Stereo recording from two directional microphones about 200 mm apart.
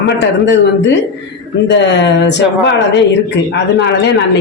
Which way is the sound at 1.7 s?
60° left (ahead or behind).